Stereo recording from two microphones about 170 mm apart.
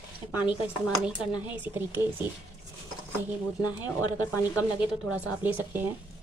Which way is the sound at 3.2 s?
10° right (ahead or behind).